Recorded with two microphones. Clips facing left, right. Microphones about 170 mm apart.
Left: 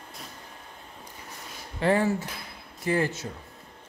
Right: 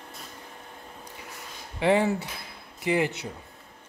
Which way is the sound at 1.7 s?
15° right (ahead or behind).